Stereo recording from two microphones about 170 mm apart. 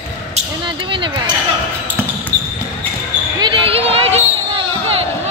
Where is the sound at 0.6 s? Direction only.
30° right (ahead or behind).